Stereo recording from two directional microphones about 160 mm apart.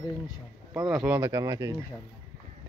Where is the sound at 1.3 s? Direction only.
20° right (ahead or behind).